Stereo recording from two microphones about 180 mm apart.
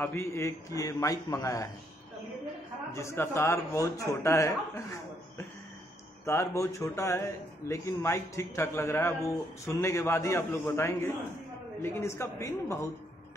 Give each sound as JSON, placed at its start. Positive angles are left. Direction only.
{"t": 0.0, "sound": "a man's voice", "side_deg": 15}
{"t": 2.9, "sound": "a man's voice", "side_deg": 15}